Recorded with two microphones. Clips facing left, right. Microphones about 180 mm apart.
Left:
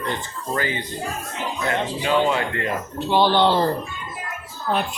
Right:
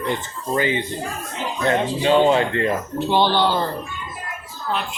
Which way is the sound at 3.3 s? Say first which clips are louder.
Left 2 dB; 25° left (ahead or behind).